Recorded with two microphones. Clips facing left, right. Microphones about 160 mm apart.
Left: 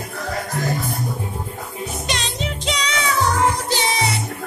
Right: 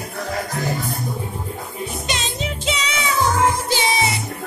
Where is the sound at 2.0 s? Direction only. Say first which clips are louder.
Even; centre (ahead or behind).